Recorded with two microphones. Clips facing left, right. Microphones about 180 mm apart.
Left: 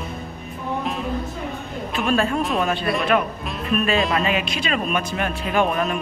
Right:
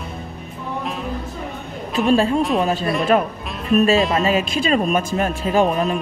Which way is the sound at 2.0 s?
30° right (ahead or behind).